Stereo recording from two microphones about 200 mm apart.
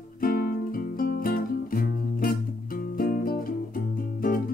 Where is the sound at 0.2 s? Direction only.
45° left (ahead or behind).